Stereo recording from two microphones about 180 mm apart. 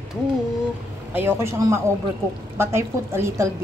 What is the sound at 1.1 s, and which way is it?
Speech, 10° right (ahead or behind).